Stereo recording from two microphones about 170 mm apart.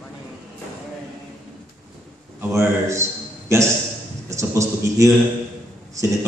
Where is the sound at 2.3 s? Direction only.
15° right (ahead or behind).